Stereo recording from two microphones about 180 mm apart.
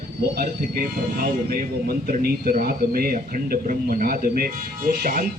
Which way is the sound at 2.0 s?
55° right (ahead or behind).